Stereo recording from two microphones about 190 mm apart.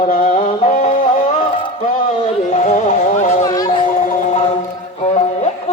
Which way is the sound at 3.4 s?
20° left (ahead or behind).